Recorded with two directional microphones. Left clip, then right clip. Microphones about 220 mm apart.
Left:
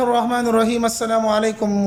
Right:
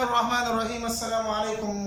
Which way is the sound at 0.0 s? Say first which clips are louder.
Left 6 dB; 35° left (ahead or behind).